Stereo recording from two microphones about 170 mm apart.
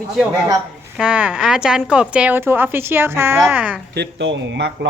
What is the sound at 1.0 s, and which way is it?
Speech, 5° right (ahead or behind).